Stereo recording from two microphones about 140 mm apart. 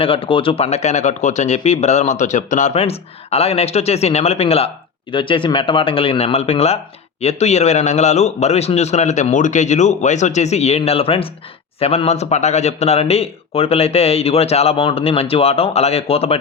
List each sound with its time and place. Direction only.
0.0 s speech: 40° left (ahead or behind)